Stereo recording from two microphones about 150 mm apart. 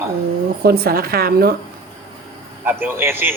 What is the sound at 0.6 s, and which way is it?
Speech, 90° right.